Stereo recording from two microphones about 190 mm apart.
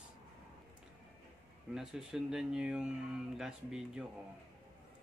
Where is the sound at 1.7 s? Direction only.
5° right (ahead or behind).